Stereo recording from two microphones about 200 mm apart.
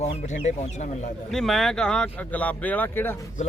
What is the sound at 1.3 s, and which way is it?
Speech, centre (ahead or behind).